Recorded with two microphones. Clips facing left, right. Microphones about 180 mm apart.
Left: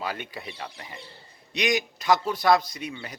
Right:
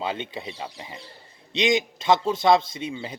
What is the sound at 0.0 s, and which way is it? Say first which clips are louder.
Speech: right 4 dB; 25° right (ahead or behind).